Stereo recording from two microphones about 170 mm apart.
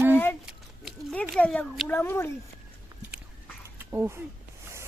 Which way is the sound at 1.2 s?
10° left (ahead or behind).